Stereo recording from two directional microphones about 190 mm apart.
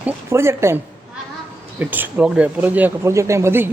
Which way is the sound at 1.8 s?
10° right (ahead or behind).